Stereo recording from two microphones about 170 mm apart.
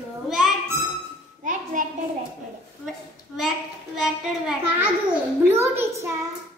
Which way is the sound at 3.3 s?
5° right (ahead or behind).